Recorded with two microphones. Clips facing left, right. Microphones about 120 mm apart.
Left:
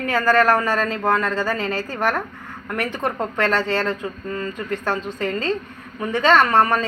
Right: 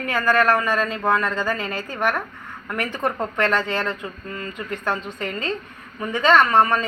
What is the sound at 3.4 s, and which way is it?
A woman's voice, 30° left (ahead or behind).